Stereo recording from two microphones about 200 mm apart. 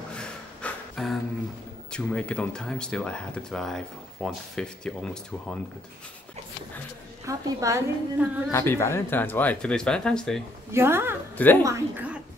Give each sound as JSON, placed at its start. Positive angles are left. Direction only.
{"t": 0.2, "sound": "a sound", "side_deg": 5}
{"t": 1.9, "sound": "speech", "side_deg": 5}
{"t": 7.2, "sound": "a woman's voice", "side_deg": -15}
{"t": 8.5, "sound": "speech", "side_deg": 10}
{"t": 10.7, "sound": "a woman's voice", "side_deg": -10}